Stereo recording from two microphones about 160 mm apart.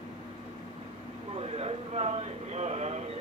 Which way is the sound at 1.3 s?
40° right (ahead or behind).